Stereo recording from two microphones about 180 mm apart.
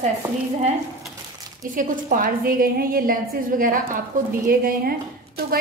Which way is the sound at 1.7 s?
50° right (ahead or behind).